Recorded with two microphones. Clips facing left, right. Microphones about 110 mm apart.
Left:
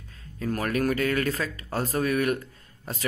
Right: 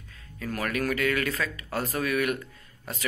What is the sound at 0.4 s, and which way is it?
Speech, 35° left (ahead or behind).